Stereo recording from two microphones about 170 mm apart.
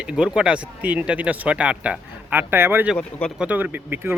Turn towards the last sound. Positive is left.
turn(degrees=-10)  # may be behind; listen again after turning